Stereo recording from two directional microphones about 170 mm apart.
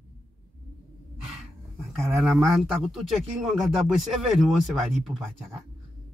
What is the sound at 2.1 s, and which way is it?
Speech, centre (ahead or behind).